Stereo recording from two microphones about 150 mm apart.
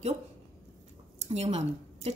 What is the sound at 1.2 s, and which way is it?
Speech, 45° right (ahead or behind).